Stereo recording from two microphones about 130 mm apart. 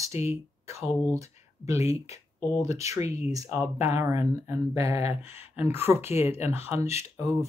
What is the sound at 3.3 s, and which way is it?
Speech, 25° right (ahead or behind).